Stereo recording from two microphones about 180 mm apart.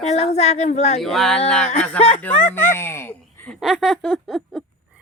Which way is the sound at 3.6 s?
Centre (ahead or behind).